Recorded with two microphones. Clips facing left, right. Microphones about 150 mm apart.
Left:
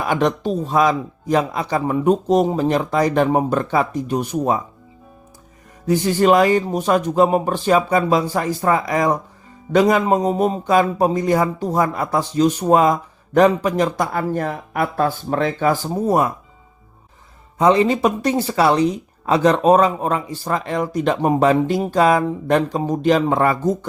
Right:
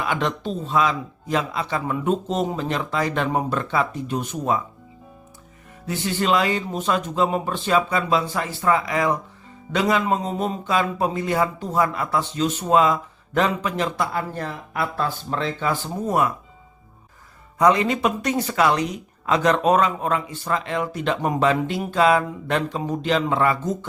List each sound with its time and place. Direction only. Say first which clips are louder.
0.0 s speech: left 6 dB; 45° left (ahead or behind)
5.8 s speech: left 8 dB; 40° left (ahead or behind)
17.6 s speech: left 4 dB; 30° left (ahead or behind)